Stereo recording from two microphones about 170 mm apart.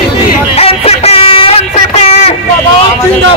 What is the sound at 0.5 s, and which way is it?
Music, 35° left (ahead or behind).